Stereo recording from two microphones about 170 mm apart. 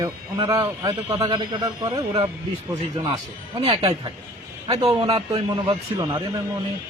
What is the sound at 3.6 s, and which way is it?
A man's voice, 35° right (ahead or behind).